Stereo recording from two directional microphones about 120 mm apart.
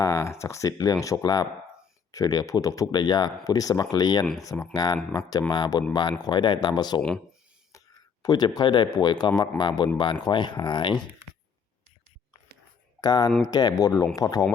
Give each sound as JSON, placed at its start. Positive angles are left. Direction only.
{"t": 0.0, "sound": "speech", "side_deg": 25}
{"t": 8.2, "sound": "speech", "side_deg": 35}
{"t": 13.0, "sound": "speech", "side_deg": 35}